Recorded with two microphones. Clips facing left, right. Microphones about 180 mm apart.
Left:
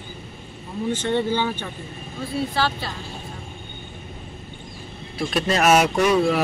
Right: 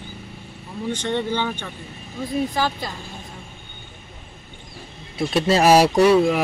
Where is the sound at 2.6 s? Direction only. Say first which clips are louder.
Even; 15° right (ahead or behind).